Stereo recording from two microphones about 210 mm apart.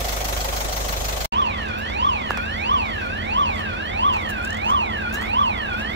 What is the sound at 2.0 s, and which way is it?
Car alarm, 55° right (ahead or behind).